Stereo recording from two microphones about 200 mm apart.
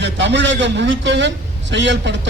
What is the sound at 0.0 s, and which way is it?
A man's voice, 60° right (ahead or behind).